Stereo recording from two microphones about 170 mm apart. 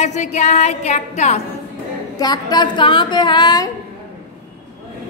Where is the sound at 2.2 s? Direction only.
25° left (ahead or behind).